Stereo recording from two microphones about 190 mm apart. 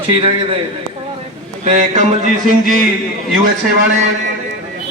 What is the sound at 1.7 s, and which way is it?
Speech, 40° right (ahead or behind).